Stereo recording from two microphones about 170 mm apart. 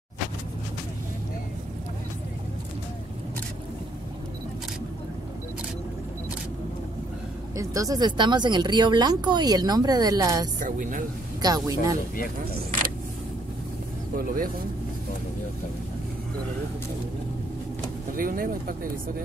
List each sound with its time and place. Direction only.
7.5 s speech: 20° right (ahead or behind)
10.6 s speech: 50° right (ahead or behind)
11.4 s speech: 20° right (ahead or behind)
14.1 s speech: 55° right (ahead or behind)
18.1 s speech: 55° right (ahead or behind)